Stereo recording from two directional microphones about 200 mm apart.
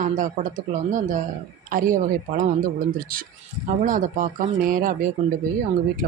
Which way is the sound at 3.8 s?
40° right (ahead or behind).